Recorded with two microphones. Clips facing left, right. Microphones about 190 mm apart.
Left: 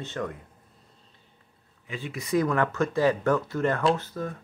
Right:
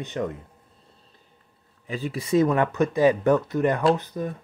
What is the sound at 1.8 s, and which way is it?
Speech, 35° right (ahead or behind).